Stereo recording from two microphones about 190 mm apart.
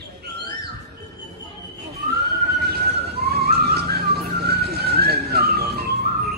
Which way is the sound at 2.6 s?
55° right (ahead or behind).